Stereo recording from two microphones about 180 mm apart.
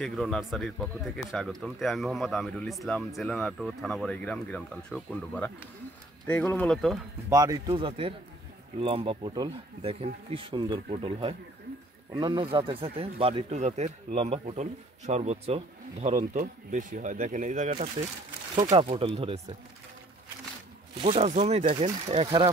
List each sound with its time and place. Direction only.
0.0 s speech: centre (ahead or behind)
7.2 s speech: 20° right (ahead or behind); by 17.8 s 45° right (ahead or behind)
18.5 s speech: 25° right (ahead or behind)
21.0 s speech: 35° right (ahead or behind)